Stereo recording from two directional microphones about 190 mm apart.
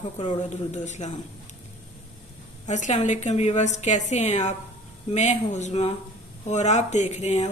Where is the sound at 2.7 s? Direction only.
40° left (ahead or behind).